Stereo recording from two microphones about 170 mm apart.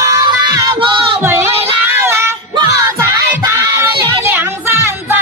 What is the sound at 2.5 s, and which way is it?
Music, 20° right (ahead or behind).